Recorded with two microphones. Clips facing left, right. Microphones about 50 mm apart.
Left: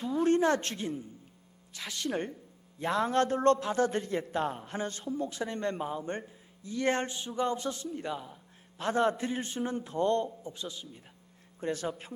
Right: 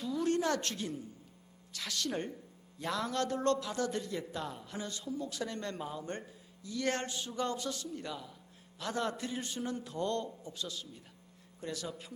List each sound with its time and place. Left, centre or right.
0.0 s a woman's voice: left
11.6 s a man's voice: left